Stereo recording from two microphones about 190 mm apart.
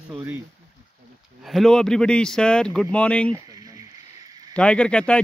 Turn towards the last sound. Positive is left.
turn(degrees=5)  # may be behind; listen again after turning